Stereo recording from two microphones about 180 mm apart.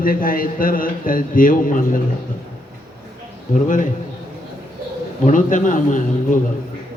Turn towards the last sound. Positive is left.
turn(degrees=45)  # may be behind; listen again after turning